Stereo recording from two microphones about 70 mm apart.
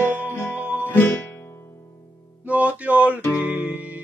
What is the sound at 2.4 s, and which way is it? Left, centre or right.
Music, right.